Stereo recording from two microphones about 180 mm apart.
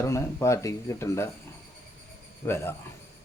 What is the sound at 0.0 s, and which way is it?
A man's voice, 15° left (ahead or behind).